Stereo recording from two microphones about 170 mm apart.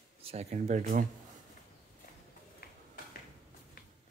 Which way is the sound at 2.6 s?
65° left (ahead or behind).